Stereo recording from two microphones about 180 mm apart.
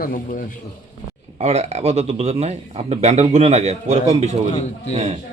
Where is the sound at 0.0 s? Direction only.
50° left (ahead or behind).